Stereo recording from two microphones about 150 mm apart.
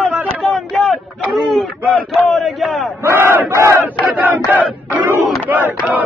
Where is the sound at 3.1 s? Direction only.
15° right (ahead or behind).